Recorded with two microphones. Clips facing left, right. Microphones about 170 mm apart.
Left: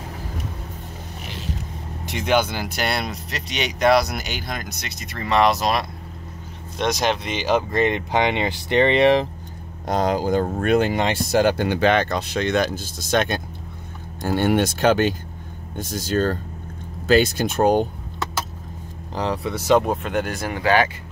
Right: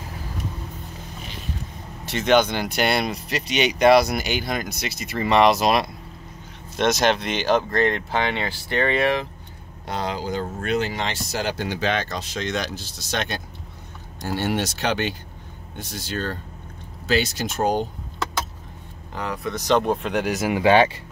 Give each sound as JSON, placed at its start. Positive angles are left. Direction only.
{"t": 2.0, "sound": "speech", "side_deg": 10}
{"t": 7.7, "sound": "speech", "side_deg": 20}
{"t": 9.8, "sound": "speech", "side_deg": 45}
{"t": 19.1, "sound": "speech", "side_deg": 30}
{"t": 19.4, "sound": "speech", "side_deg": 5}
{"t": 20.6, "sound": "speech", "side_deg": -25}